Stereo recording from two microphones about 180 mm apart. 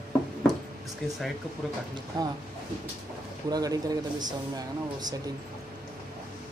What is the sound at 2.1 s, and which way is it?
Speech, 25° right (ahead or behind).